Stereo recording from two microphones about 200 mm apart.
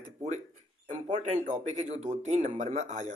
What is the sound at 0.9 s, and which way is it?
Speech, 35° right (ahead or behind).